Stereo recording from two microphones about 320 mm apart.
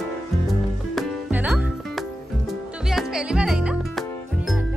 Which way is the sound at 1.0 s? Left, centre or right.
Centre.